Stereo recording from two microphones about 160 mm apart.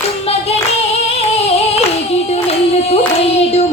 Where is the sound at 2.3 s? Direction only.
40° left (ahead or behind).